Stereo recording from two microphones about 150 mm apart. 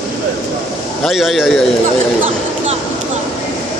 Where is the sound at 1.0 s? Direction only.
Centre (ahead or behind).